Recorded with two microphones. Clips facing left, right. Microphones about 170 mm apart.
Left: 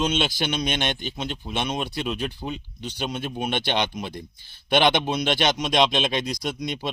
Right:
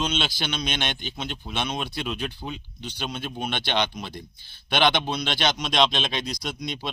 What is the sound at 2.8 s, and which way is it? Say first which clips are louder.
Speech: left 3 dB; 45° left (ahead or behind).